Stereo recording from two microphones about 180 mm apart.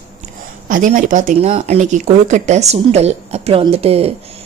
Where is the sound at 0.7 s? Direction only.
45° right (ahead or behind).